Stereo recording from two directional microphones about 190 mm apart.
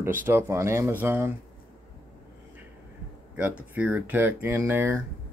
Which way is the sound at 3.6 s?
5° right (ahead or behind).